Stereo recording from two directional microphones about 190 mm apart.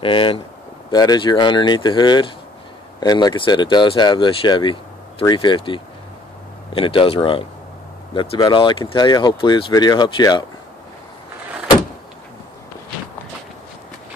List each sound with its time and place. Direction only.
0.0 s speech: 25° left (ahead or behind)